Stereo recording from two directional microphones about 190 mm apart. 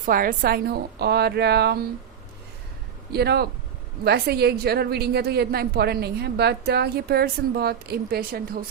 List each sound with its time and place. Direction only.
0.0 s a woman's voice: 45° right (ahead or behind)
3.1 s a woman's voice: 55° right (ahead or behind)